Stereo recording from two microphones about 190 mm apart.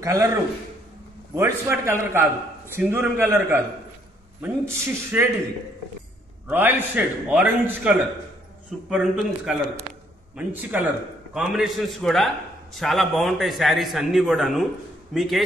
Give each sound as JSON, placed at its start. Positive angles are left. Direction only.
{"t": 0.0, "sound": "a man's voice", "side_deg": -15}
{"t": 6.5, "sound": "a man's voice", "side_deg": -10}